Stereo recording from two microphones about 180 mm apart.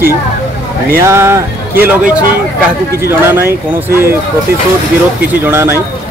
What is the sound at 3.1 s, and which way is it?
Speech, 10° right (ahead or behind).